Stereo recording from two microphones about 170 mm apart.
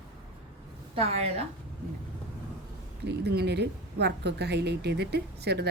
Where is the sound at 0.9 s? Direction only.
40° right (ahead or behind).